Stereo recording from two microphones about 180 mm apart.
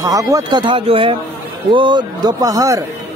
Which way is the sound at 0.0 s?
20° right (ahead or behind).